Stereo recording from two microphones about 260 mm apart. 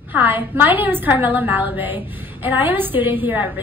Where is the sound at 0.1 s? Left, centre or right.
Centre.